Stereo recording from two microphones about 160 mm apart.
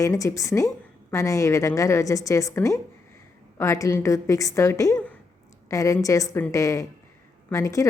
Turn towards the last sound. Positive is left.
turn(degrees=20)  # may be behind; listen again after turning